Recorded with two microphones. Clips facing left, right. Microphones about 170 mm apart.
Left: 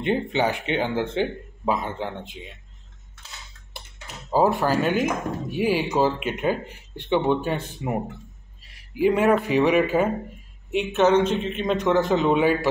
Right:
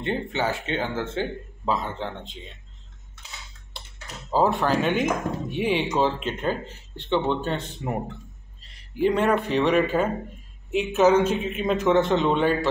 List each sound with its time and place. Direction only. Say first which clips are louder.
0.0 s speech: left 4 dB; 15° left (ahead or behind)
4.3 s a man's voice: left 1 dB; 10° left (ahead or behind)
10.7 s a man's voice: even; centre (ahead or behind)